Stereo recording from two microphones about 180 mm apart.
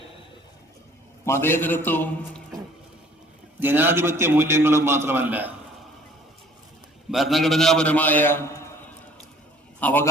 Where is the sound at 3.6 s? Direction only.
10° right (ahead or behind).